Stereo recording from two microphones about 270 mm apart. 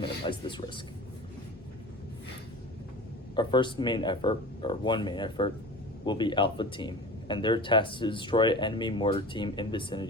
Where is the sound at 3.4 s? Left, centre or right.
Centre.